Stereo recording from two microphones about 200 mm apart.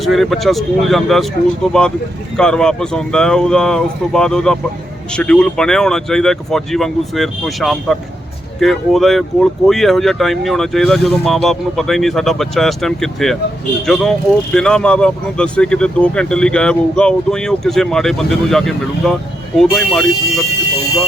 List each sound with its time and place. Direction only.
0.0 s speech: centre (ahead or behind)
2.3 s speech: 5° left (ahead or behind)